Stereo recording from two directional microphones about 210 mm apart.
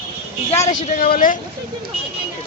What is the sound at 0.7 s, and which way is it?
Speech, 35° left (ahead or behind).